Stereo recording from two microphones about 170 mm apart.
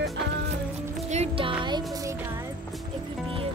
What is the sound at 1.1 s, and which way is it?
Music, 35° right (ahead or behind).